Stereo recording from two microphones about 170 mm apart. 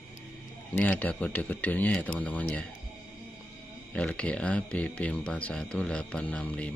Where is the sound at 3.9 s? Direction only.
5° left (ahead or behind).